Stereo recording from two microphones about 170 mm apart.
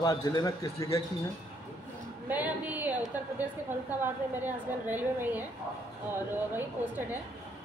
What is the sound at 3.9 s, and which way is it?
A woman's voice, 10° right (ahead or behind).